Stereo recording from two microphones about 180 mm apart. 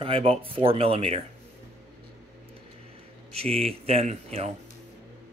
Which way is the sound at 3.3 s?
35° right (ahead or behind).